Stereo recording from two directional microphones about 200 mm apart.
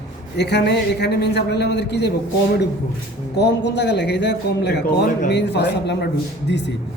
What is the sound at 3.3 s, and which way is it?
A man's voice, 60° left (ahead or behind).